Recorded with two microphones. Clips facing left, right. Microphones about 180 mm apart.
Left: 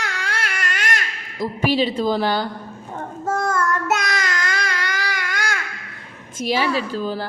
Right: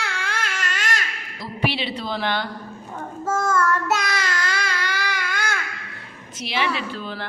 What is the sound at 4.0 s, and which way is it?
Child singing, 45° left (ahead or behind).